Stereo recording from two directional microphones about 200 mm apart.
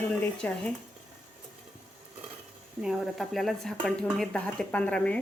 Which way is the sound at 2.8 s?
Centre (ahead or behind).